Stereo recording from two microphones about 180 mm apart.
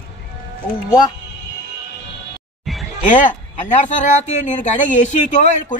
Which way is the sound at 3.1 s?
45° left (ahead or behind).